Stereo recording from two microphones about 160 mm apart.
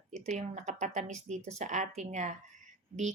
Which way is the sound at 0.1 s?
45° right (ahead or behind).